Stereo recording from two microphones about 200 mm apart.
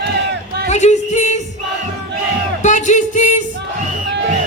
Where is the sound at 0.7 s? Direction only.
35° left (ahead or behind).